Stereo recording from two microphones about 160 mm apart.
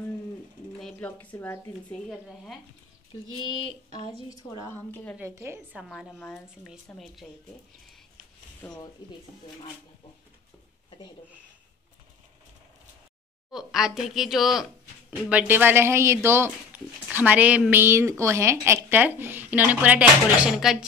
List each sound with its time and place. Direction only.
0.7 s a sound: centre (ahead or behind)
1.1 s speech: 10° left (ahead or behind)
3.6 s a woman's voice: 30° left (ahead or behind); by 5.1 s 15° left (ahead or behind)
5.1 s speech: 15° right (ahead or behind)
5.8 s a woman's voice: centre (ahead or behind)
8.6 s speech: 5° left (ahead or behind)
13.5 s speech: centre (ahead or behind)